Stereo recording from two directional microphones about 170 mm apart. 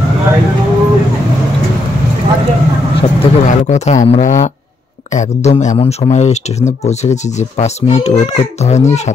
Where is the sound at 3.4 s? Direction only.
40° left (ahead or behind).